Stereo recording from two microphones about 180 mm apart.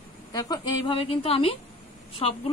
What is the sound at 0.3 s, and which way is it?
A woman's voice, 20° left (ahead or behind).